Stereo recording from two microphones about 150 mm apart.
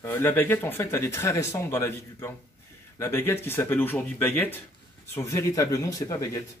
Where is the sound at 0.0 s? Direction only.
15° left (ahead or behind).